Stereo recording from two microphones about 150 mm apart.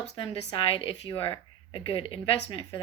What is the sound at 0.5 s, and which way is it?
A woman's voice, 35° left (ahead or behind).